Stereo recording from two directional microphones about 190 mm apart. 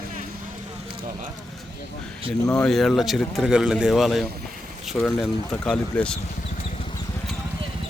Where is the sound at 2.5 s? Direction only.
5° left (ahead or behind).